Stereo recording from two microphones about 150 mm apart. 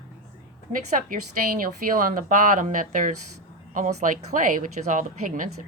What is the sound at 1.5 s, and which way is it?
Speech, 65° right (ahead or behind).